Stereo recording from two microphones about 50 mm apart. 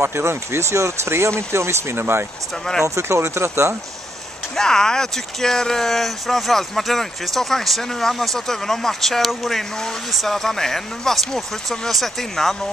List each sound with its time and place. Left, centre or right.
0.0 s speech: right
2.8 s speech: right
4.6 s speech: centre